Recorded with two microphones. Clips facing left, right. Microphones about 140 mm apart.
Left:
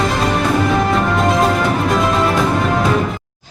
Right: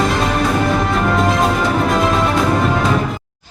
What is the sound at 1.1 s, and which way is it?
Music, centre (ahead or behind).